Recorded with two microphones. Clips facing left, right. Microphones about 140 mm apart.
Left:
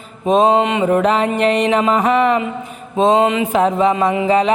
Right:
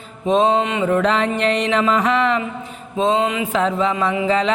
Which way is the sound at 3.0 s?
20° left (ahead or behind).